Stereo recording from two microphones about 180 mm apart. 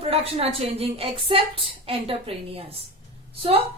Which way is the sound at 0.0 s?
35° right (ahead or behind).